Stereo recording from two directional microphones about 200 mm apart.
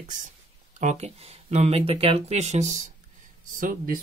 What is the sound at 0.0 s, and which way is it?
Speech, 40° right (ahead or behind).